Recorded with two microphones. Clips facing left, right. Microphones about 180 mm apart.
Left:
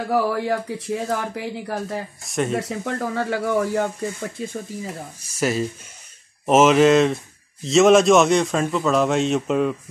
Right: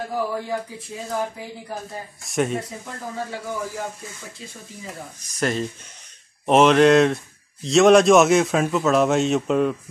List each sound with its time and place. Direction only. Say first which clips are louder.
0.1 s speech: left 6 dB; 75° left (ahead or behind)
2.2 s a man's voice: right 2 dB; centre (ahead or behind)
2.5 s speech: left 5 dB; 75° left (ahead or behind)
5.4 s a man's voice: left 2 dB; 5° left (ahead or behind)